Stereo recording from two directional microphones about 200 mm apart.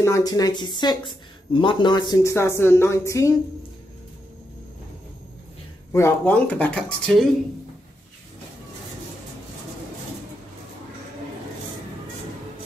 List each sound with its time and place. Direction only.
0.0 s a woman's voice: 15° left (ahead or behind)
5.9 s a woman's voice: 10° left (ahead or behind)